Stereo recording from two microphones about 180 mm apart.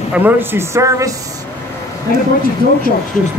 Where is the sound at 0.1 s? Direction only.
10° right (ahead or behind).